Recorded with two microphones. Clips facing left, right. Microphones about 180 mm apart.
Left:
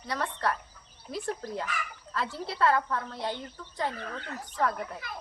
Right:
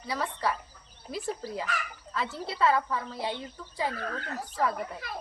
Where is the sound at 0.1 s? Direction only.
5° right (ahead or behind).